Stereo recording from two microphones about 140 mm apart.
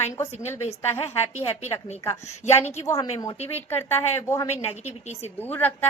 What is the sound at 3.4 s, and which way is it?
A woman's voice, 15° left (ahead or behind).